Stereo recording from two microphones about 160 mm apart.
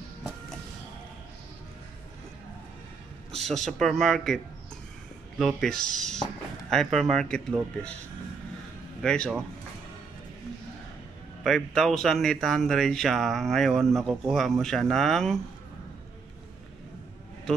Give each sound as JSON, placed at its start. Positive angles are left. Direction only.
{"t": 3.3, "sound": "a man's voice", "side_deg": 0}
{"t": 5.4, "sound": "speech", "side_deg": 5}
{"t": 9.0, "sound": "speech", "side_deg": 5}
{"t": 11.4, "sound": "speech", "side_deg": 0}